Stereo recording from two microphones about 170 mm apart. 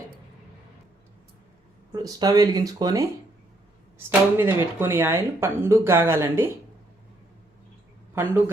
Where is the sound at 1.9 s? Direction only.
20° right (ahead or behind).